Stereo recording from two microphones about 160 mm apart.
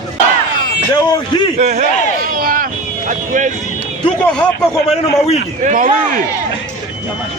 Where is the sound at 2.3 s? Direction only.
60° right (ahead or behind).